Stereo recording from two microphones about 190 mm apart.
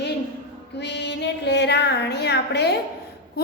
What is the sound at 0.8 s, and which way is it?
Female singing, 65° left (ahead or behind).